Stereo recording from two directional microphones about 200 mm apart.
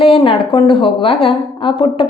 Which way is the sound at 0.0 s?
25° left (ahead or behind).